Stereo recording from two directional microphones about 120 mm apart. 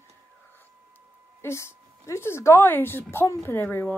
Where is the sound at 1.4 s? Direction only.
20° left (ahead or behind).